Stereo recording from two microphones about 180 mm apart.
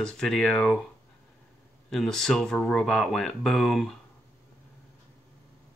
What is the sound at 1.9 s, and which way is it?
Speech, centre (ahead or behind).